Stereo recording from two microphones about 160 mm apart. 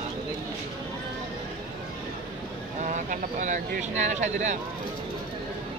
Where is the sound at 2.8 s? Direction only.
50° right (ahead or behind).